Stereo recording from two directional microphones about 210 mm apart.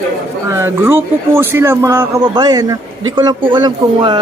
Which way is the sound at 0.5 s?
10° right (ahead or behind).